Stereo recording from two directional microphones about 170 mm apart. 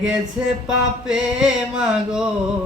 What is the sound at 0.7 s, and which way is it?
Music, 5° right (ahead or behind).